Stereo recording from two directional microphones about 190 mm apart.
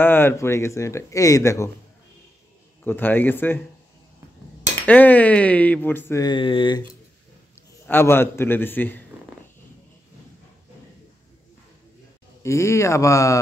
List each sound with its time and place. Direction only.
0.0 s speech: 10° left (ahead or behind)
2.8 s speech: 10° left (ahead or behind)
4.8 s speech: 10° left (ahead or behind); by 6.8 s 25° left (ahead or behind)
7.8 s speech: 10° left (ahead or behind)
12.4 s speech: 15° left (ahead or behind)